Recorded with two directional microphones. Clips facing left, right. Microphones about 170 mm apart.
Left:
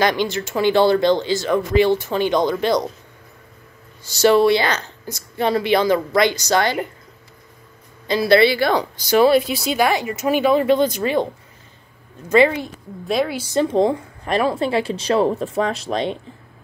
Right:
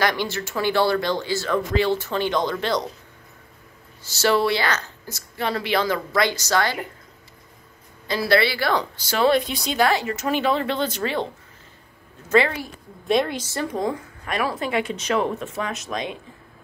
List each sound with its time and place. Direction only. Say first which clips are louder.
0.0 s speech: left 4 dB; 20° left (ahead or behind)
4.0 s a woman's voice: left 6 dB; 15° left (ahead or behind)
8.1 s speech: left 6 dB; 20° left (ahead or behind)
12.3 s speech: left 5 dB; 15° left (ahead or behind)
13.0 s a woman's voice: left 1 dB; centre (ahead or behind)
13.5 s a woman's voice: left 8 dB; 25° left (ahead or behind)